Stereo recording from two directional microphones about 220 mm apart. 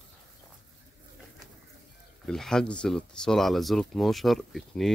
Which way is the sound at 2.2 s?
Centre (ahead or behind).